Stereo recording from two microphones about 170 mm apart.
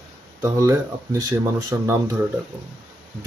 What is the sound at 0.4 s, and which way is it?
Speech, 20° right (ahead or behind).